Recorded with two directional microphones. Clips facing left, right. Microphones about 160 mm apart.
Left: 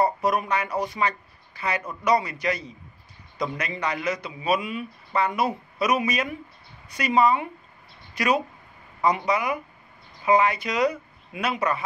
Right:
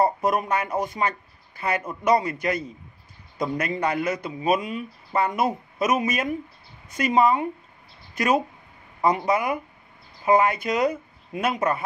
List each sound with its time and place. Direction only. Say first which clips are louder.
0.0 s a man's voice: right 1 dB; 50° right (ahead or behind)